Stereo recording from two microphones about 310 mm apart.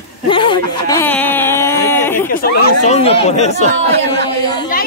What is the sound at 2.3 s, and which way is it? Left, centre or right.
Speech, left.